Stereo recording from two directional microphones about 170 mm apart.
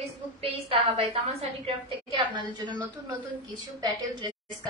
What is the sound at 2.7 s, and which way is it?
A woman's voice, 20° right (ahead or behind).